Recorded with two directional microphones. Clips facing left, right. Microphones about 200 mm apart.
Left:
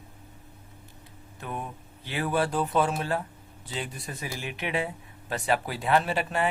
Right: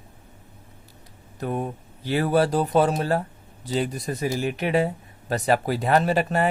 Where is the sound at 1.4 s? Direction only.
40° right (ahead or behind).